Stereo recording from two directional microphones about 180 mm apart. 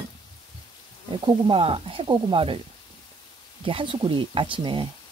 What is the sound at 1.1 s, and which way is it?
Speech, 30° right (ahead or behind).